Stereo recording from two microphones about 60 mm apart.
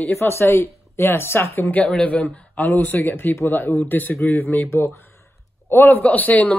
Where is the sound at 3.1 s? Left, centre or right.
Left.